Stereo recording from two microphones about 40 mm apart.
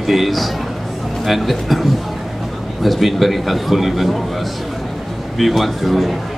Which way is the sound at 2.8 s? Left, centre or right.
Centre.